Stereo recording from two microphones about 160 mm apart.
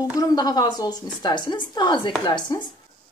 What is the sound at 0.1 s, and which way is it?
A woman's voice, 20° left (ahead or behind).